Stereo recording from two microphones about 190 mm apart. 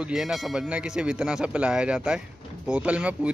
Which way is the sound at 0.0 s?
Centre (ahead or behind).